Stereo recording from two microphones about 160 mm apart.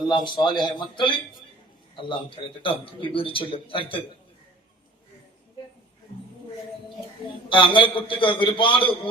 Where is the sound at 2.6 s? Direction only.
35° left (ahead or behind).